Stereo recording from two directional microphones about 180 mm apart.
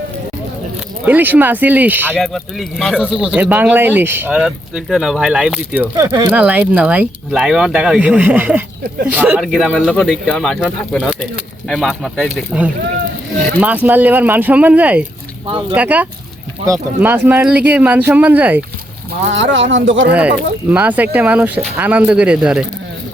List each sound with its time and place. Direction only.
1.0 s speech: 10° right (ahead or behind)
2.1 s speech: centre (ahead or behind)
6.1 s speech: 25° right (ahead or behind)
6.3 s speech: 10° right (ahead or behind)
19.3 s speech: 90° right
20.1 s speech: 5° right (ahead or behind)